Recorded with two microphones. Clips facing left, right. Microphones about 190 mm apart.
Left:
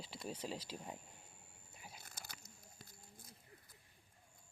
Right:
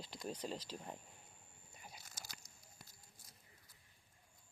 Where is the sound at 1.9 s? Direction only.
55° left (ahead or behind).